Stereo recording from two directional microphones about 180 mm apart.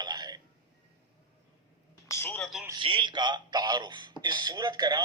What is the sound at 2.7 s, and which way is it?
Speech, 30° right (ahead or behind).